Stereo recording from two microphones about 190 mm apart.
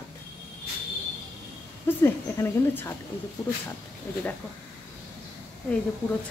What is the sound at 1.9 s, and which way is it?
Speech, 10° left (ahead or behind).